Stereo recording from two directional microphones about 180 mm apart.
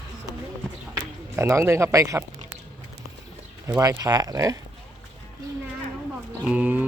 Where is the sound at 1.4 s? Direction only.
15° right (ahead or behind).